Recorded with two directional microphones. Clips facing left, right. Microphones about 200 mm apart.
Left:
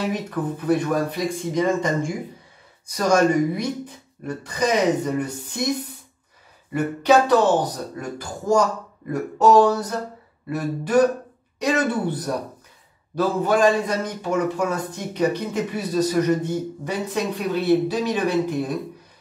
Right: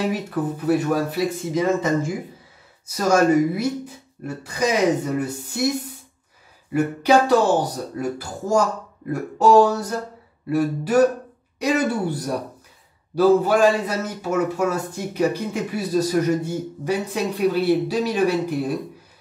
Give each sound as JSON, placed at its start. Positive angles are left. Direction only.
{"t": 0.1, "sound": "a man's voice", "side_deg": -10}
{"t": 6.7, "sound": "a man's voice", "side_deg": -10}